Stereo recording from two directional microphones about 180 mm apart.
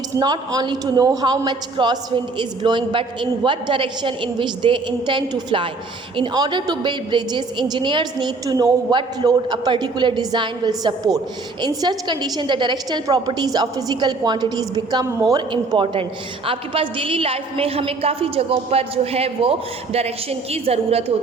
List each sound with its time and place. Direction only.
0.2 s a woman's voice: 20° right (ahead or behind)